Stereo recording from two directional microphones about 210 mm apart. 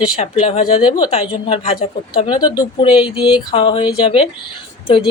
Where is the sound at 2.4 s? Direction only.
20° left (ahead or behind).